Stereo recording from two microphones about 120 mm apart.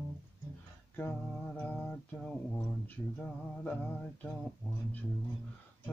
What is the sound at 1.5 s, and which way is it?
Mantra, 10° left (ahead or behind).